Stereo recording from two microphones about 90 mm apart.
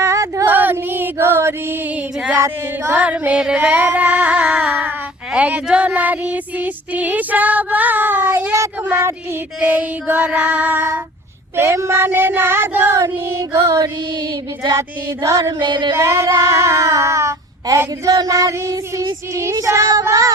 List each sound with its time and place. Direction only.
0.0 s female singing: 35° right (ahead or behind)
0.4 s a sound: 20° right (ahead or behind)
2.3 s child singing: 25° right (ahead or behind)
3.0 s singing: 15° right (ahead or behind)
8.9 s child singing: 30° right (ahead or behind)
11.5 s child singing: 30° right (ahead or behind)
13.8 s a sound: 50° right (ahead or behind)
14.8 s female singing: 35° right (ahead or behind)
15.5 s a sound: 60° right (ahead or behind)
16.0 s female singing: 30° right (ahead or behind)